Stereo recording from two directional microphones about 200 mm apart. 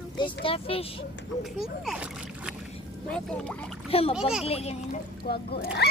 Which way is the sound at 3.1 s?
5° left (ahead or behind).